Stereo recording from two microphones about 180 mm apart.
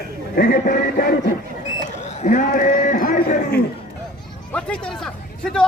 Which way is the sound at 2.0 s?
45° left (ahead or behind).